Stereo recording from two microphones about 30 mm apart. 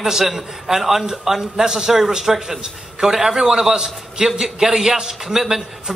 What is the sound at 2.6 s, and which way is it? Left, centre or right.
A man's voice, right.